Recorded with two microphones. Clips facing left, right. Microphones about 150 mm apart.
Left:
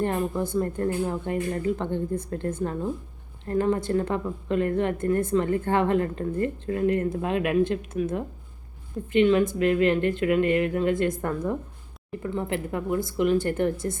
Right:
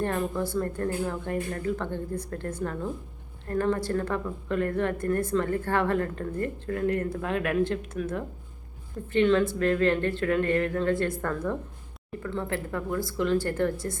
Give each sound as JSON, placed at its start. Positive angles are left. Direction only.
{"t": 0.0, "sound": "a woman's voice", "side_deg": 20}